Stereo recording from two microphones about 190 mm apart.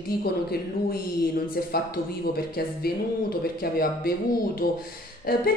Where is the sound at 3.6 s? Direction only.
50° left (ahead or behind).